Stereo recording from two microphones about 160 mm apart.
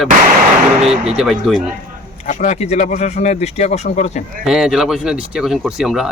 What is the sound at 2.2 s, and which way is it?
Speech, 50° left (ahead or behind).